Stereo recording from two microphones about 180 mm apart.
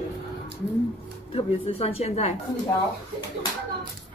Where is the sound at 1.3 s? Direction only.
30° left (ahead or behind).